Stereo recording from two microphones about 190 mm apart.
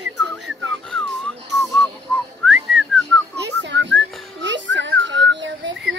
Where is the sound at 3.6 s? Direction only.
70° right (ahead or behind).